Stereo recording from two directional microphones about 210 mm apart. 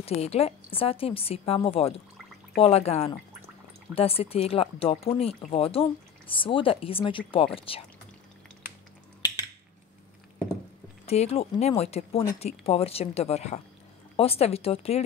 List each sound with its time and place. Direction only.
0.0 s speech: 30° left (ahead or behind)
11.1 s speech: 30° left (ahead or behind)